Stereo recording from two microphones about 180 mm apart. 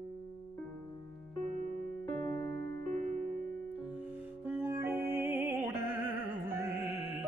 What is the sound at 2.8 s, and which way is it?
Music, 50° right (ahead or behind).